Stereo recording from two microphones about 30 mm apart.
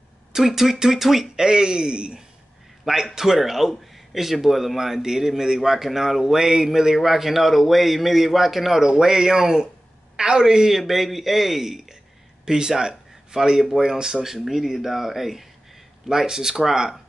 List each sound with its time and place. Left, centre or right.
0.3 s a man's voice: centre
1.3 s speech: right
2.8 s a man's voice: centre
8.8 s a woman's voice: centre
10.4 s a man's voice: centre
10.8 s a man's voice: centre
12.4 s a man's voice: right
16.1 s speech: right